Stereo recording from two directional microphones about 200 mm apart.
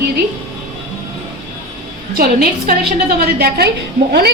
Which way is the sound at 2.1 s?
50° right (ahead or behind).